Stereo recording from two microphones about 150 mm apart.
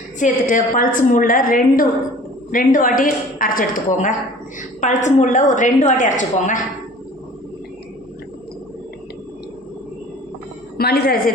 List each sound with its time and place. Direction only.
0.2 s a woman's voice: 60° left (ahead or behind)
10.8 s a woman's voice: 90° left